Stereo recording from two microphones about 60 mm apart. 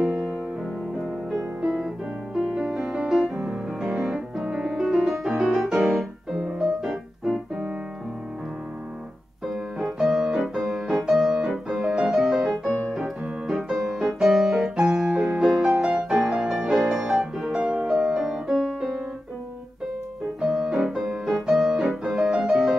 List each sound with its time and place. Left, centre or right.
0.0 s music: centre
2.3 s music: centre
9.5 s music: centre
20.3 s music: centre